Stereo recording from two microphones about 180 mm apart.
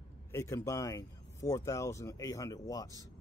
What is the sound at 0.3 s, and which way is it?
Speech, 15° left (ahead or behind).